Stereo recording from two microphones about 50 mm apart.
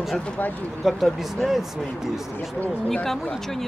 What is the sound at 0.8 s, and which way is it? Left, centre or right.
Speech, centre.